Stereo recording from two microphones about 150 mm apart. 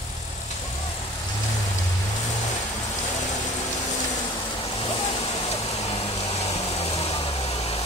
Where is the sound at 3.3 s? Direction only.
50° left (ahead or behind).